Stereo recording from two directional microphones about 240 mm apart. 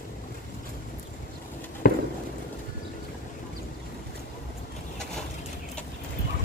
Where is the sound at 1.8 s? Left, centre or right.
Left.